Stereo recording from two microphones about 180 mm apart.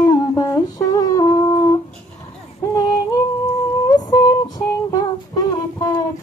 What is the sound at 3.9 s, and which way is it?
Synthetic singing, 20° left (ahead or behind).